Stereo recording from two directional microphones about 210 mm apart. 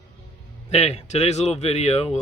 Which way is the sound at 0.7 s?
30° left (ahead or behind).